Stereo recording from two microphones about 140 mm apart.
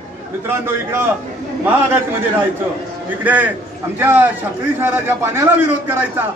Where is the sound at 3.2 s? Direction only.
10° right (ahead or behind).